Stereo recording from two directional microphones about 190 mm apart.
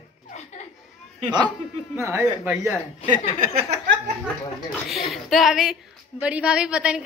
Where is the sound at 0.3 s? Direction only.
35° left (ahead or behind).